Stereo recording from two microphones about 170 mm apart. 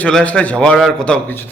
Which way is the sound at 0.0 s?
5° left (ahead or behind).